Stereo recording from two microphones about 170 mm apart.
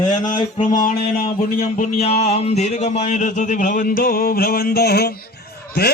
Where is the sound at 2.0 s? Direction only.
35° left (ahead or behind).